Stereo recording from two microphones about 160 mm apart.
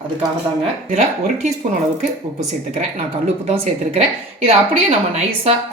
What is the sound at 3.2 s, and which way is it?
A woman's voice, 40° right (ahead or behind).